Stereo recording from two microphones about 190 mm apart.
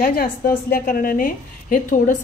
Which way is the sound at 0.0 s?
50° left (ahead or behind).